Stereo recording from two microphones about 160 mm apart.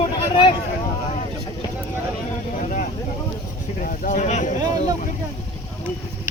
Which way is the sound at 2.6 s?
50° left (ahead or behind).